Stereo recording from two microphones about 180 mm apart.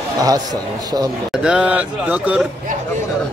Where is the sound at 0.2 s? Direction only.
20° right (ahead or behind).